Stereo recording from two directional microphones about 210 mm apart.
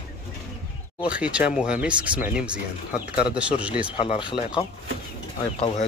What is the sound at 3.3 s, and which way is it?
Speech, 5° right (ahead or behind).